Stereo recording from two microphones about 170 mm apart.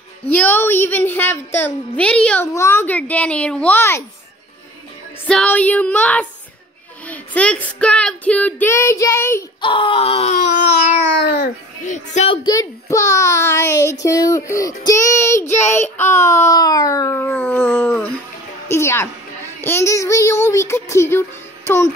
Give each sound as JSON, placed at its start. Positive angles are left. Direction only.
{"t": 0.3, "sound": "speech", "side_deg": 10}
{"t": 5.3, "sound": "speech", "side_deg": 5}
{"t": 9.6, "sound": "wail", "side_deg": 30}
{"t": 11.8, "sound": "speech", "side_deg": 45}
{"t": 12.4, "sound": "a child's voice", "side_deg": 20}